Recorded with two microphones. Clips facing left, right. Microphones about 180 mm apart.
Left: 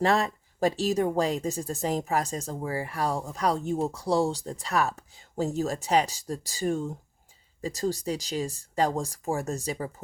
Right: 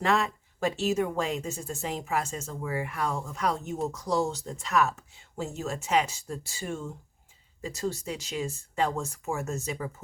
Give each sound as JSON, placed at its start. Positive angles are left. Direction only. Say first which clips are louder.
{"t": 0.0, "sound": "speech", "louder": "left 2 dB", "side_deg": 35}